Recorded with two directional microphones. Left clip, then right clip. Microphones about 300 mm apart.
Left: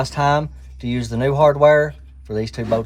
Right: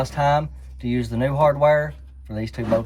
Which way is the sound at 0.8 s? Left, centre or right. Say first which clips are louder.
Left 3 dB; centre.